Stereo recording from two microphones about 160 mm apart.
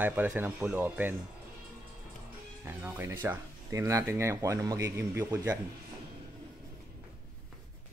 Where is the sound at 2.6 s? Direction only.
10° right (ahead or behind).